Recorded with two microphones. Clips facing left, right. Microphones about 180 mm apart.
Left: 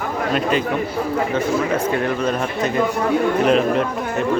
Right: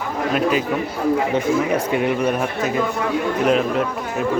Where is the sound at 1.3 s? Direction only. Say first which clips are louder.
Right 1 dB; 15° right (ahead or behind).